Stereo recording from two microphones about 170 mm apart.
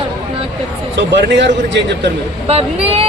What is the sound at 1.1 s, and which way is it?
A man's voice, 90° right.